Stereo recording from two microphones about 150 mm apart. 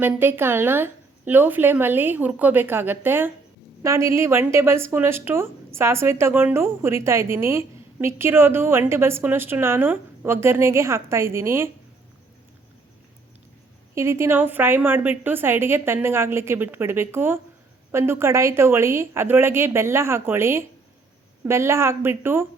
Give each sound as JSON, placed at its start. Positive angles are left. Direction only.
{"t": 0.0, "sound": "a woman's voice", "side_deg": -15}
{"t": 13.9, "sound": "a woman's voice", "side_deg": -15}